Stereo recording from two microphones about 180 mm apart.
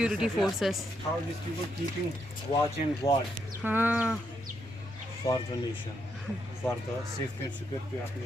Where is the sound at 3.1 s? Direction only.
20° left (ahead or behind).